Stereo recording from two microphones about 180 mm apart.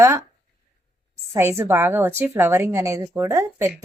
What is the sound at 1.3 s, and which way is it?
A woman's voice, 15° right (ahead or behind).